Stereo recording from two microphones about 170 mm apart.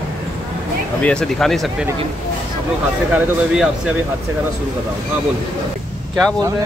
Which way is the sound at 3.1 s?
5° right (ahead or behind).